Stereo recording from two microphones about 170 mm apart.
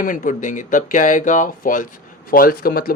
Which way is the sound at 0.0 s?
50° left (ahead or behind).